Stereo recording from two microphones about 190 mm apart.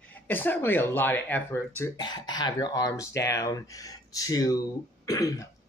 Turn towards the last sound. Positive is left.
turn(degrees=20)  # may be behind; listen again after turning